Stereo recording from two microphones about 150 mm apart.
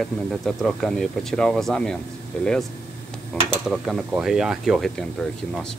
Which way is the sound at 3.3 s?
5° left (ahead or behind).